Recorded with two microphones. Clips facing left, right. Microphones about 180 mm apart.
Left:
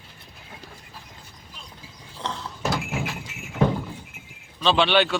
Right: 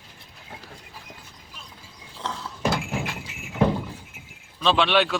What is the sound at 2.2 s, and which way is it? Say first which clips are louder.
Horse: right 2 dB; centre (ahead or behind).